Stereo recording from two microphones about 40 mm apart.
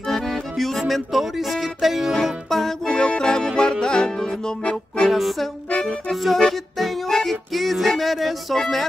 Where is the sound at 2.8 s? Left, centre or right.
Centre.